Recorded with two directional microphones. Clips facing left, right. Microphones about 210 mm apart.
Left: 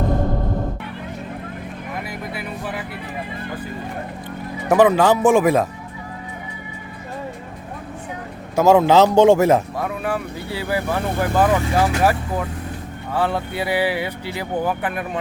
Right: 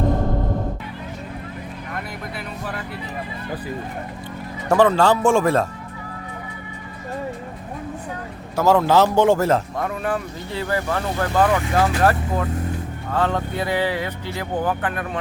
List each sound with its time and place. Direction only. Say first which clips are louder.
2.3 s music: left 2 dB; 5° left (ahead or behind)
4.7 s speech: left 2 dB; 15° left (ahead or behind)
8.5 s speech: left 3 dB; 20° left (ahead or behind)
9.7 s speech: even; centre (ahead or behind)